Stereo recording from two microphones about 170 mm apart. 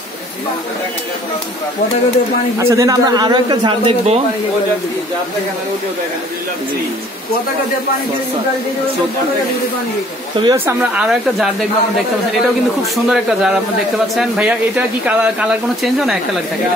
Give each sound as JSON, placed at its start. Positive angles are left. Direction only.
{"t": 2.6, "sound": "a man's voice", "side_deg": -20}
{"t": 10.4, "sound": "speech", "side_deg": -15}
{"t": 12.9, "sound": "speech", "side_deg": -5}